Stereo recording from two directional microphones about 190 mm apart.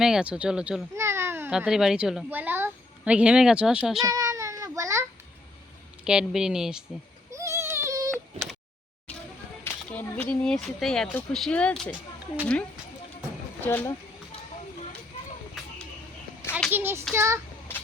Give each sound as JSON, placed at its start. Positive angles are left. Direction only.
{"t": 0.0, "sound": "a child's voice", "side_deg": -5}
{"t": 4.0, "sound": "child singing", "side_deg": -20}
{"t": 6.1, "sound": "speech", "side_deg": -5}
{"t": 7.3, "sound": "a sound", "side_deg": -15}
{"t": 8.1, "sound": "a sound", "side_deg": 0}
{"t": 9.9, "sound": "speech", "side_deg": 10}
{"t": 13.6, "sound": "speech", "side_deg": 10}
{"t": 16.4, "sound": "children playing", "side_deg": 10}
{"t": 16.7, "sound": "child singing", "side_deg": -10}
{"t": 17.2, "sound": "a child's voice", "side_deg": -15}